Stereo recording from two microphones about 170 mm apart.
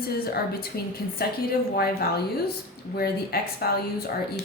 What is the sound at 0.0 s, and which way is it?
A woman's voice, 65° left (ahead or behind).